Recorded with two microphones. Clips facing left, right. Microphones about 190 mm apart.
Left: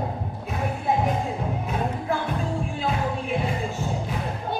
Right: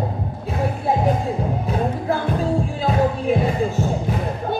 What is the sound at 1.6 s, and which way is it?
Music, 35° right (ahead or behind).